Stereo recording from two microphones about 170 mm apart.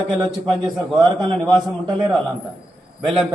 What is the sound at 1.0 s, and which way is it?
Speech, 25° right (ahead or behind).